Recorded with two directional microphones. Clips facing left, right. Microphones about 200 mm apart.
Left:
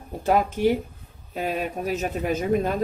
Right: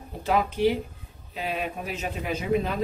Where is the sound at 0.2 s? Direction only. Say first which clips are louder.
Left 2 dB; 45° left (ahead or behind).